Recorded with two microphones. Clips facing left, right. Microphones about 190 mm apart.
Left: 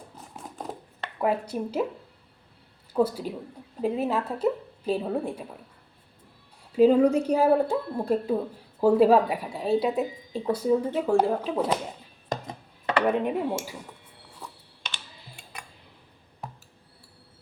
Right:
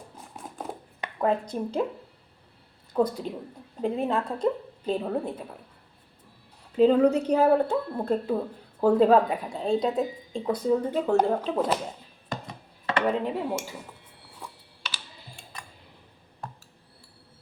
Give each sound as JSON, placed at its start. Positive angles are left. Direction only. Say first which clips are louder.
{"t": 0.3, "sound": "a sound", "louder": "even", "side_deg": -5}
{"t": 1.2, "sound": "a woman's voice", "louder": "even", "side_deg": 10}
{"t": 3.0, "sound": "a woman's voice", "louder": "left 1 dB", "side_deg": 5}
{"t": 6.7, "sound": "a woman's voice", "louder": "left 1 dB", "side_deg": 10}
{"t": 12.3, "sound": "chopping", "louder": "left 3 dB", "side_deg": 40}
{"t": 13.1, "sound": "a woman's voice", "louder": "left 1 dB", "side_deg": 15}